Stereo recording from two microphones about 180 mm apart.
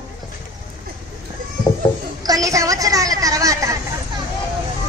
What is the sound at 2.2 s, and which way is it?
A woman's voice, 20° right (ahead or behind).